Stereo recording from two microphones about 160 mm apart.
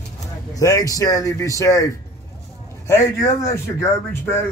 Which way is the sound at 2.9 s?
20° left (ahead or behind).